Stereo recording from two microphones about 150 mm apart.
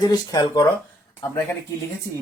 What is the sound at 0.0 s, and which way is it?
Speech, 25° left (ahead or behind).